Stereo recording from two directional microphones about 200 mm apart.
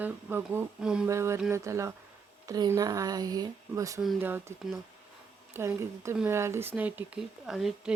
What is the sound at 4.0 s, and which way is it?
Speech, 5° right (ahead or behind).